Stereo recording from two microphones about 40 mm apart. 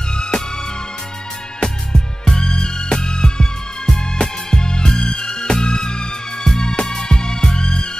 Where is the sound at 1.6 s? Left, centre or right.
Centre.